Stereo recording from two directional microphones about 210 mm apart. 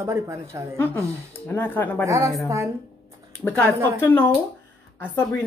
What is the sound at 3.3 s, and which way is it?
A woman's voice, 10° left (ahead or behind).